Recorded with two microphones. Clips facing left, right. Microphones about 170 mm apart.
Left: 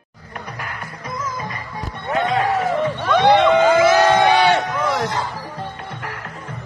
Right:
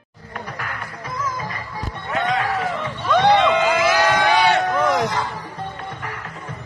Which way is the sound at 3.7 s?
25° left (ahead or behind).